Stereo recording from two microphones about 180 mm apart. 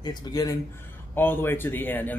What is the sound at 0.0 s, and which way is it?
Speech, 25° left (ahead or behind).